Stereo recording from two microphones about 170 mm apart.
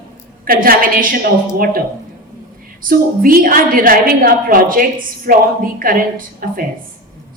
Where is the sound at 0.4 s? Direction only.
60° right (ahead or behind).